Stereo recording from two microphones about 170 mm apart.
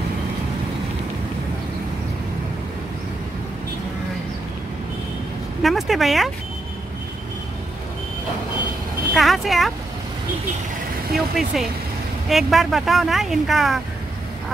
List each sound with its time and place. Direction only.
5.6 s speech: centre (ahead or behind)
9.1 s speech: centre (ahead or behind)
11.1 s speech: centre (ahead or behind)